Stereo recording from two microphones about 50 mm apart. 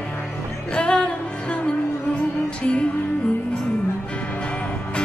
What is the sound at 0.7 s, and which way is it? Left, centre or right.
Music, centre.